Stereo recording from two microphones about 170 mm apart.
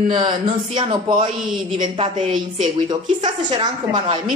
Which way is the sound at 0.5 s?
30° right (ahead or behind).